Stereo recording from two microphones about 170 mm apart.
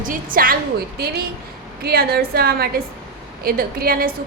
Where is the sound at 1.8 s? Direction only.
65° right (ahead or behind).